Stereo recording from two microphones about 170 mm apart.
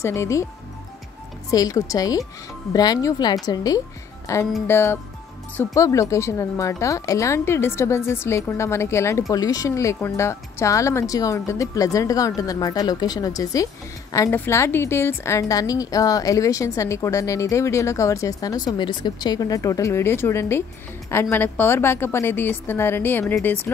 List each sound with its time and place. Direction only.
0.0 s a woman's voice: 15° left (ahead or behind)
1.5 s a woman's voice: 20° left (ahead or behind)